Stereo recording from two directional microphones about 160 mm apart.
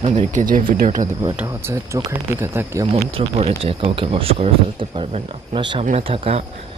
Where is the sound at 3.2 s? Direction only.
40° right (ahead or behind).